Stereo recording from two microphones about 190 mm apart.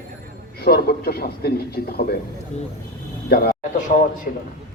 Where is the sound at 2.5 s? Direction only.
35° left (ahead or behind).